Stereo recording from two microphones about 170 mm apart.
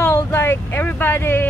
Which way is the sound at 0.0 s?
15° left (ahead or behind).